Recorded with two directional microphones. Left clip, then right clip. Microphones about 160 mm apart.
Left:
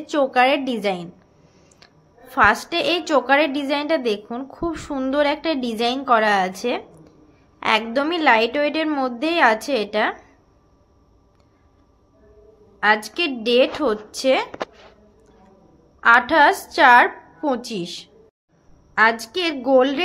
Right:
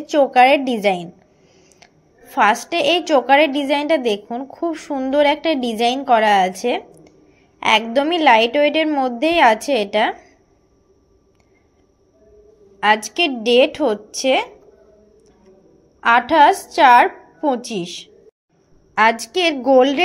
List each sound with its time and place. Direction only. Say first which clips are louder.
0.0 s a woman's voice: right 5 dB; 10° right (ahead or behind)
2.3 s a woman's voice: right 1 dB; 10° right (ahead or behind)
12.8 s a woman's voice: right 3 dB; 15° right (ahead or behind)
16.0 s a woman's voice: right 2 dB; 10° right (ahead or behind)